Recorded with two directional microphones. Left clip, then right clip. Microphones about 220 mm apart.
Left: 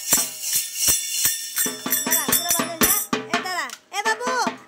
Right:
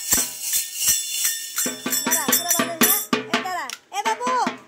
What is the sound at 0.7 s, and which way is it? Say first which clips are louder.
Jingle bell: left 1 dB; 20° left (ahead or behind).